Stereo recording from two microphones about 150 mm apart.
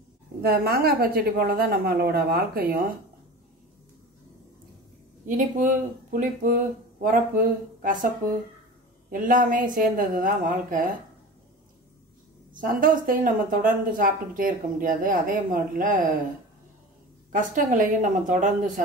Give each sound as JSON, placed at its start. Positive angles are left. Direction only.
{"t": 0.4, "sound": "a woman's voice", "side_deg": -90}
{"t": 5.2, "sound": "speech", "side_deg": -60}
{"t": 12.5, "sound": "speech", "side_deg": -65}
{"t": 17.3, "sound": "speech", "side_deg": -60}